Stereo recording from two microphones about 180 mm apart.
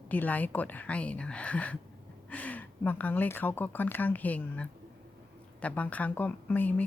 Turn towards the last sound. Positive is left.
turn(degrees=10)  # may be behind; listen again after turning